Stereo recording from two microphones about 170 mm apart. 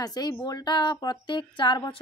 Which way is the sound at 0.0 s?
25° left (ahead or behind).